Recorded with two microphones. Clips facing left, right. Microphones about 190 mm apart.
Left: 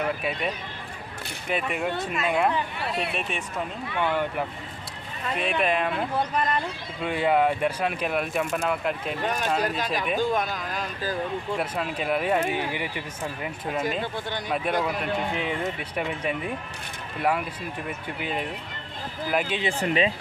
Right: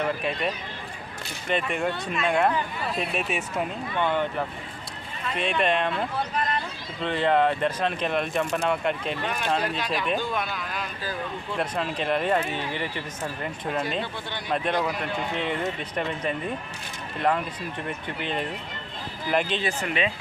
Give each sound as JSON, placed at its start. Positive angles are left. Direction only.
{"t": 0.0, "sound": "speech", "side_deg": 5}
{"t": 4.0, "sound": "speech", "side_deg": 10}
{"t": 7.0, "sound": "speech", "side_deg": 10}
{"t": 9.2, "sound": "speech", "side_deg": 45}
{"t": 11.5, "sound": "speech", "side_deg": 5}
{"t": 19.8, "sound": "speech", "side_deg": 35}